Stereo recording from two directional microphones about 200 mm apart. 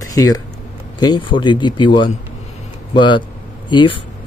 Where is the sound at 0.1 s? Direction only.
20° left (ahead or behind).